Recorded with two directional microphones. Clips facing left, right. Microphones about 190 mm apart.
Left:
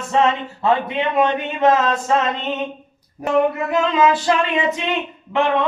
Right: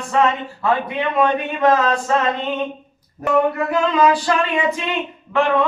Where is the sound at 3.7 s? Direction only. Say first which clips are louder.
Even; 20° left (ahead or behind).